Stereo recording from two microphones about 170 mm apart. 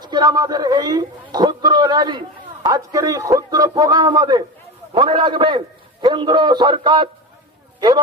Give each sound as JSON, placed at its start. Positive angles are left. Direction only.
{"t": 0.0, "sound": "a man's voice", "side_deg": -25}